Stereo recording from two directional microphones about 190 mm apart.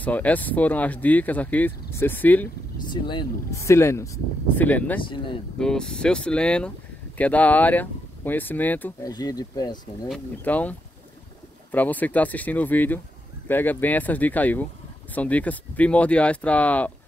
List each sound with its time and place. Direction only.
0.0 s speech: 10° left (ahead or behind)
2.9 s speech: 25° left (ahead or behind); by 5.0 s 10° left (ahead or behind)
5.1 s speech: 25° left (ahead or behind)
5.6 s speech: 5° left (ahead or behind)
9.1 s speech: 20° left (ahead or behind)
10.3 s speech: 10° left (ahead or behind)